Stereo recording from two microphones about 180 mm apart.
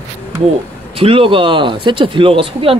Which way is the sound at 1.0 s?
30° right (ahead or behind).